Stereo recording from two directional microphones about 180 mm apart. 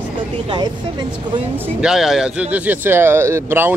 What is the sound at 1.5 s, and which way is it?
A man's voice, 5° right (ahead or behind).